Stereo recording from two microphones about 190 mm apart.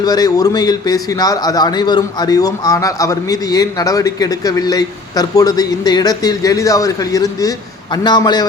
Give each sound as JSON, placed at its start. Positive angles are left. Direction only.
{"t": 0.0, "sound": "a man's voice", "side_deg": 20}